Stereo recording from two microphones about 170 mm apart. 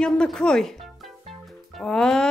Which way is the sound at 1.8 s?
5° left (ahead or behind).